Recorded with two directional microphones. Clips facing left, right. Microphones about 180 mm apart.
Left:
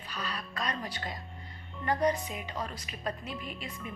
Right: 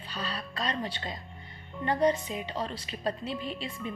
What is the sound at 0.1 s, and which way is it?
A woman's voice, 30° right (ahead or behind).